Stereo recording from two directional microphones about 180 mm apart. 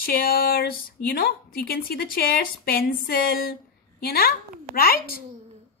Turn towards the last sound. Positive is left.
turn(degrees=55)  # may be behind; listen again after turning